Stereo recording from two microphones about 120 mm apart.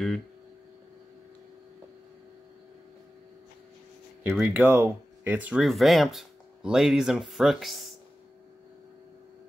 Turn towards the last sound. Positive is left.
turn(degrees=0)  # may be behind; listen again after turning